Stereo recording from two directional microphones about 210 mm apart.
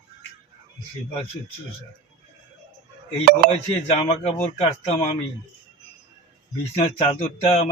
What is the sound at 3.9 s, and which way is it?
Speech, 30° left (ahead or behind).